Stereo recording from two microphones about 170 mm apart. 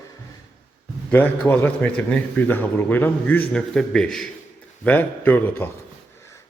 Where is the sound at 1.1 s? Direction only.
10° left (ahead or behind).